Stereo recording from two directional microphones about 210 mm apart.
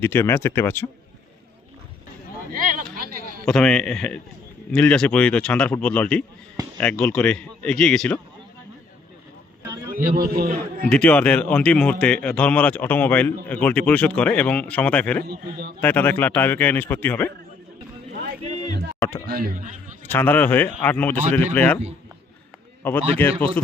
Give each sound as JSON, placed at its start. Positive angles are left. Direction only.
{"t": 0.0, "sound": "speech", "side_deg": 10}
{"t": 2.5, "sound": "a sound", "side_deg": -40}
{"t": 3.4, "sound": "a man's voice", "side_deg": 5}
{"t": 9.9, "sound": "a man's voice", "side_deg": -40}
{"t": 10.9, "sound": "speech", "side_deg": 5}
{"t": 15.2, "sound": "a man's voice", "side_deg": -50}
{"t": 15.8, "sound": "speech", "side_deg": 10}
{"t": 18.2, "sound": "music", "side_deg": -35}
{"t": 19.2, "sound": "a man's voice", "side_deg": -45}
{"t": 20.1, "sound": "speech", "side_deg": 10}
{"t": 22.8, "sound": "speech", "side_deg": 5}